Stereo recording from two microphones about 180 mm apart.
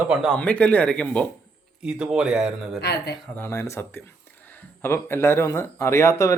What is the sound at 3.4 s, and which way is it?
Speech, 15° left (ahead or behind).